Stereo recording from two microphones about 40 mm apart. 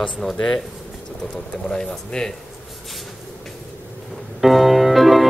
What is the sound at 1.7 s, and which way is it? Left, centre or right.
Speech, centre.